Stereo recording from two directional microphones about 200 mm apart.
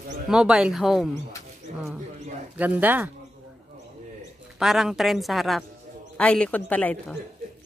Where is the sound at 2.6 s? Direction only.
10° right (ahead or behind).